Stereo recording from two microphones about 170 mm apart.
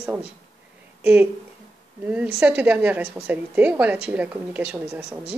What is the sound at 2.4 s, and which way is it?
Speech, 10° right (ahead or behind).